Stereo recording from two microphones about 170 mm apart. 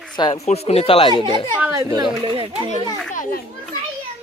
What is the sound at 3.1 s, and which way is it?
Speech, 50° left (ahead or behind).